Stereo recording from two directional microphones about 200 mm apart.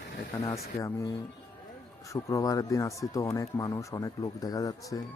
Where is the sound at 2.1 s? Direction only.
15° left (ahead or behind).